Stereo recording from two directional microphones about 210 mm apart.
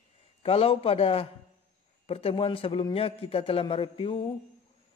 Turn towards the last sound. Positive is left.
turn(degrees=25)  # may be behind; listen again after turning